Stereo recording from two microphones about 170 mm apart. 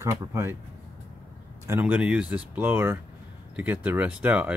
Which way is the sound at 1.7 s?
10° right (ahead or behind).